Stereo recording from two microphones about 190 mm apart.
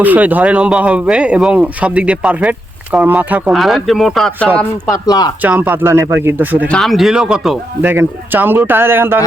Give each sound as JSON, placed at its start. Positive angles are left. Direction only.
{"t": 0.0, "sound": "speech", "side_deg": -10}
{"t": 4.9, "sound": "speech", "side_deg": 20}
{"t": 5.4, "sound": "a man's voice", "side_deg": -10}
{"t": 6.7, "sound": "a man's voice", "side_deg": 0}